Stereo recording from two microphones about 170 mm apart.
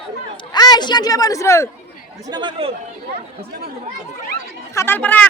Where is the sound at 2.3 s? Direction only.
25° right (ahead or behind).